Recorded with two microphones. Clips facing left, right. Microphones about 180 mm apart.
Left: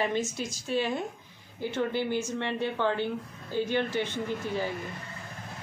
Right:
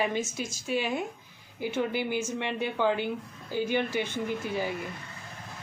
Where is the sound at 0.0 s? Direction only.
5° right (ahead or behind).